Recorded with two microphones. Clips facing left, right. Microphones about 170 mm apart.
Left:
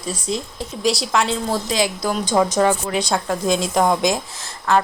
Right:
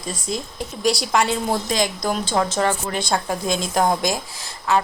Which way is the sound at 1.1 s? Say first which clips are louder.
Even; 5° right (ahead or behind).